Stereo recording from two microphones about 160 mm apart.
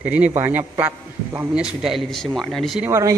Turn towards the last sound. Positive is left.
turn(degrees=-20)  # may be behind; listen again after turning